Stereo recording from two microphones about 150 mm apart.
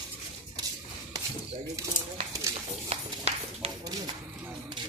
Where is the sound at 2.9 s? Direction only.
45° right (ahead or behind).